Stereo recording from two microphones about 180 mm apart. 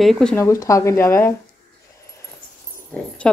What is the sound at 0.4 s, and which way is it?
Speech, 15° left (ahead or behind).